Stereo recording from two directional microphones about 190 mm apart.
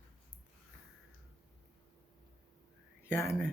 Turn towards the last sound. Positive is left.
turn(degrees=15)  # may be behind; listen again after turning